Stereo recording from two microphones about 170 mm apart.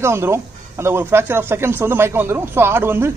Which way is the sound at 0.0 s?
15° right (ahead or behind).